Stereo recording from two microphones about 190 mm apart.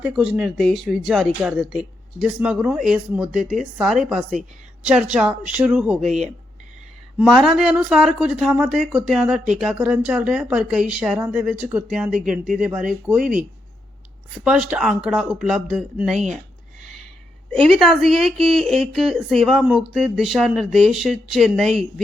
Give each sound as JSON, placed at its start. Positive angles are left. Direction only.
{"t": 0.0, "sound": "speech", "side_deg": -5}
{"t": 5.5, "sound": "speech", "side_deg": -5}
{"t": 6.1, "sound": "speech", "side_deg": -35}
{"t": 7.2, "sound": "speech", "side_deg": 0}
{"t": 14.4, "sound": "speech", "side_deg": -5}
{"t": 17.5, "sound": "speech", "side_deg": 0}